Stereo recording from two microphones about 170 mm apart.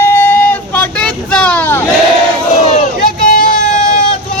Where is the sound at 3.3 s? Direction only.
55° left (ahead or behind).